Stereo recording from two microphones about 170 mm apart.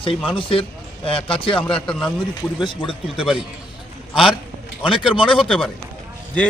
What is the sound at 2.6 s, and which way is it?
Speech, 30° left (ahead or behind).